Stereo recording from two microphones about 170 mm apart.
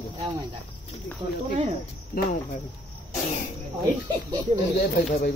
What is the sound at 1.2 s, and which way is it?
Speech, 25° right (ahead or behind).